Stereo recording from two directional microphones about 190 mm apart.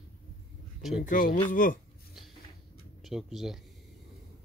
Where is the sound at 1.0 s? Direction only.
45° left (ahead or behind).